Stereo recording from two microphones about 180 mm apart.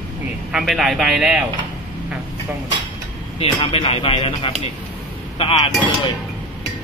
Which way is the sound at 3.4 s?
30° left (ahead or behind).